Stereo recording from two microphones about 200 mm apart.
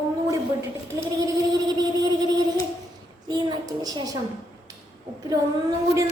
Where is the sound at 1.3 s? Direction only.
20° right (ahead or behind).